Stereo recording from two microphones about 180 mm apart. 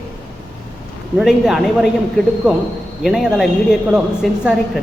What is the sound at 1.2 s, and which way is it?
A woman's voice, centre (ahead or behind).